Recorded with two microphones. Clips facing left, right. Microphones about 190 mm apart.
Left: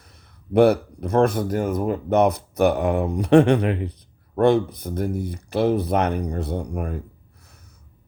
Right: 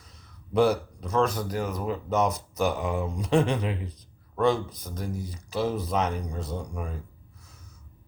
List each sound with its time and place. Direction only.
0.0 s speech: 60° left (ahead or behind)